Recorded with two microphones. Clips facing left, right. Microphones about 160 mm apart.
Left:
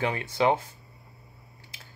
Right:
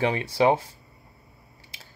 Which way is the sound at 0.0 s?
25° right (ahead or behind).